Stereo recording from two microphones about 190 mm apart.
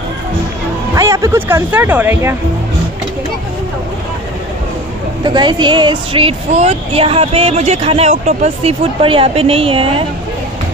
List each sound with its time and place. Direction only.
0.9 s speech: 15° right (ahead or behind)
5.2 s a woman's voice: 25° right (ahead or behind)